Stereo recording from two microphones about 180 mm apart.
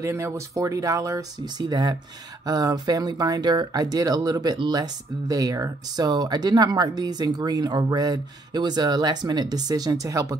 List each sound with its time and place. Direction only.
0.0 s speech: 15° right (ahead or behind)